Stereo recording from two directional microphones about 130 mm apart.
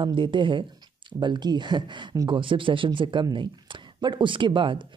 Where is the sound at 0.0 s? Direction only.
40° right (ahead or behind).